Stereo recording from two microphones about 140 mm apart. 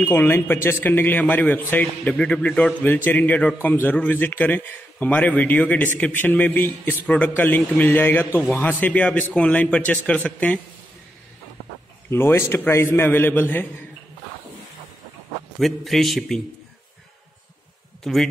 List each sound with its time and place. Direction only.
0.0 s a man's voice: 15° left (ahead or behind)
12.1 s a man's voice: 15° left (ahead or behind)
15.6 s a man's voice: centre (ahead or behind)
18.0 s a man's voice: 5° left (ahead or behind)